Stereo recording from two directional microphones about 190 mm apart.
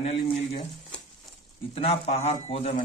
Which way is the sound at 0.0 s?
30° left (ahead or behind).